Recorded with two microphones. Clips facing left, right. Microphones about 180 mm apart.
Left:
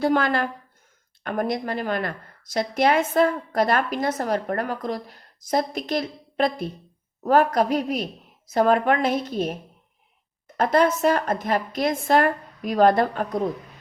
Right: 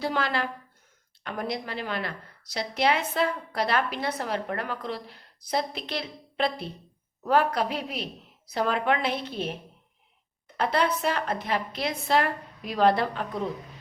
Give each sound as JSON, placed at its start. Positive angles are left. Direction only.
{"t": 0.0, "sound": "a woman's voice", "side_deg": 50}
{"t": 10.6, "sound": "a woman's voice", "side_deg": 45}